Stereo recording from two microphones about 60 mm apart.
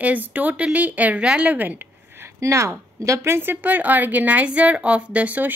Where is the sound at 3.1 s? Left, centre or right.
Right.